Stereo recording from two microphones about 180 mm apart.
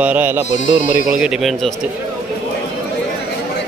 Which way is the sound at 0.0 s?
10° right (ahead or behind).